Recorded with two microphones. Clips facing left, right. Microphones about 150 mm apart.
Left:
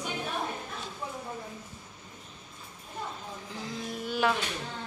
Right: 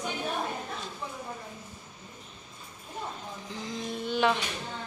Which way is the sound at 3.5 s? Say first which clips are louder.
Right 2 dB; 5° left (ahead or behind).